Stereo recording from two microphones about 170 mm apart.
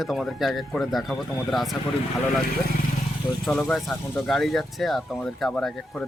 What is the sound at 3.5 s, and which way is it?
Speech, 5° left (ahead or behind).